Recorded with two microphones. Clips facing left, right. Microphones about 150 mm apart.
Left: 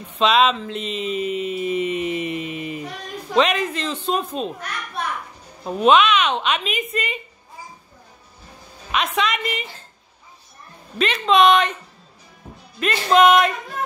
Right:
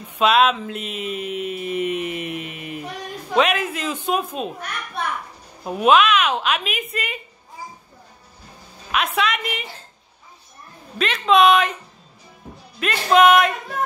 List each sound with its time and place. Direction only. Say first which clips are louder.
0.1 s mantra: even; 5° right (ahead or behind)
3.3 s a woman's voice: left 1 dB; 5° right (ahead or behind)
5.6 s mantra: even; 5° right (ahead or behind)
8.9 s mantra: even; centre (ahead or behind)
11.0 s mantra: even; centre (ahead or behind)
12.8 s mantra: even; centre (ahead or behind)